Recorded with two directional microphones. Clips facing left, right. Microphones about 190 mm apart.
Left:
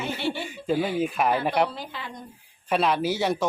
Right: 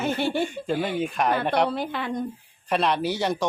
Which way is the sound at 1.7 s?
60° right (ahead or behind).